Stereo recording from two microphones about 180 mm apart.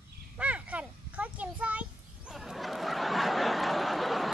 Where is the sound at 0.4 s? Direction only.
5° right (ahead or behind).